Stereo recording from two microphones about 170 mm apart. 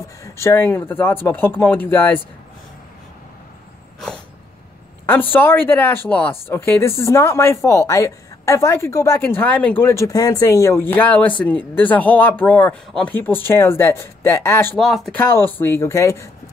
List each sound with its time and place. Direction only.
0.2 s speech: 15° left (ahead or behind)
5.3 s speech: 10° left (ahead or behind)
14.8 s speech: centre (ahead or behind)
15.1 s speech: 15° left (ahead or behind)